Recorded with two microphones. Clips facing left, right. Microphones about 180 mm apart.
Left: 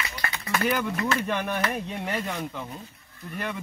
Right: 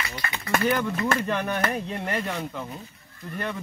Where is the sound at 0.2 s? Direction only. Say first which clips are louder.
Left 1 dB; 60° left (ahead or behind).